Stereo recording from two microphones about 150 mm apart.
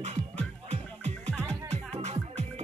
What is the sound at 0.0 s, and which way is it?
Music, 45° right (ahead or behind).